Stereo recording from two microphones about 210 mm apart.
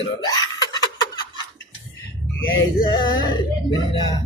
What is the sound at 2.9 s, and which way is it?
A man's voice, 20° left (ahead or behind).